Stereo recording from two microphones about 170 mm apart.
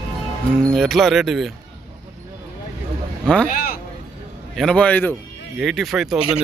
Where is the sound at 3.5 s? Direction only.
60° left (ahead or behind).